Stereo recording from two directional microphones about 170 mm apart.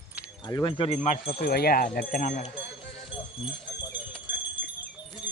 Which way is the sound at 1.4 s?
65° left (ahead or behind).